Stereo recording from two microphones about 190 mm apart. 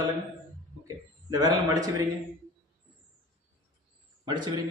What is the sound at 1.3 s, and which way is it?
Speech, 20° right (ahead or behind).